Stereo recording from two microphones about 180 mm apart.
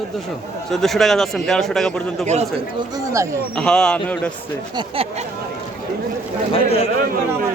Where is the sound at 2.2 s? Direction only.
40° right (ahead or behind).